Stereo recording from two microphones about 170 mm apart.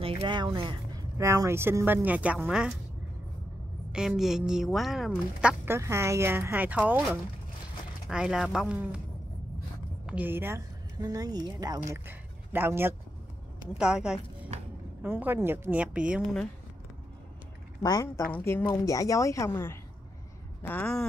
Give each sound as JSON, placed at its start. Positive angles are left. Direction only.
{"t": 0.0, "sound": "speech", "side_deg": -30}
{"t": 3.9, "sound": "speech", "side_deg": -5}
{"t": 5.7, "sound": "speech", "side_deg": -15}
{"t": 10.0, "sound": "a woman's voice", "side_deg": -10}
{"t": 11.9, "sound": "a woman's voice", "side_deg": -10}
{"t": 17.8, "sound": "a woman's voice", "side_deg": 20}